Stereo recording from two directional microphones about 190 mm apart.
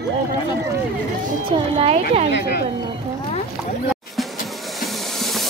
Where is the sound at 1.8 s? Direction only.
35° right (ahead or behind).